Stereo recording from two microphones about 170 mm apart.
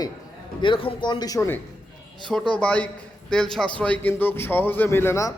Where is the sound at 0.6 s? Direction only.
30° left (ahead or behind).